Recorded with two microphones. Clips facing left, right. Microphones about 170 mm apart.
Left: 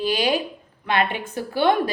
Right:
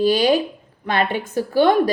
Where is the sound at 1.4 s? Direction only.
40° right (ahead or behind).